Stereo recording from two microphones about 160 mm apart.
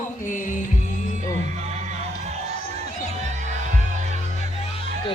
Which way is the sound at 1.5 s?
45° right (ahead or behind).